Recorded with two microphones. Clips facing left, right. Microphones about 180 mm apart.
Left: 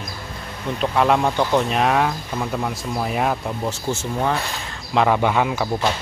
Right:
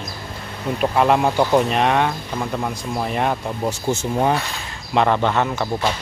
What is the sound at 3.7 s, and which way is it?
Speech, 20° right (ahead or behind).